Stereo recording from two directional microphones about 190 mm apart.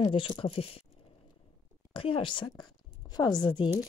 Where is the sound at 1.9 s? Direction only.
30° left (ahead or behind).